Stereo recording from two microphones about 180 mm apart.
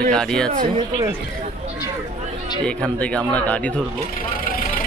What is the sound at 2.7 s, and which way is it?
Speech, 5° left (ahead or behind).